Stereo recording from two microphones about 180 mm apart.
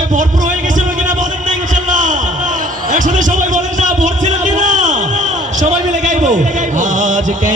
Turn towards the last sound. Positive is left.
turn(degrees=-45)  # may be behind; listen again after turning